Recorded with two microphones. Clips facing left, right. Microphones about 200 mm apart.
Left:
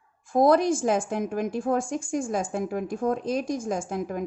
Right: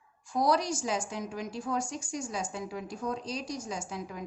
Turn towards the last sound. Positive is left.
turn(degrees=50)  # may be behind; listen again after turning